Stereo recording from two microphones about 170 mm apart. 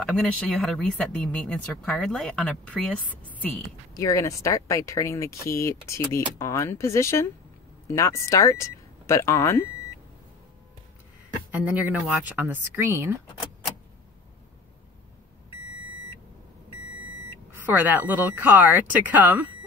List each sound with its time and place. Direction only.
0.0 s speech: 5° left (ahead or behind)
3.9 s speech: 20° left (ahead or behind)
11.5 s speech: 10° right (ahead or behind)
17.5 s speech: 10° right (ahead or behind)